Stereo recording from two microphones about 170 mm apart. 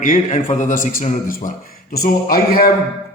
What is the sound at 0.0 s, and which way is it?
A man's voice, 45° left (ahead or behind).